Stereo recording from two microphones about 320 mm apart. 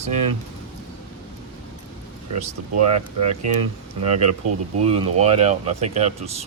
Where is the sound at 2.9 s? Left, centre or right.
Centre.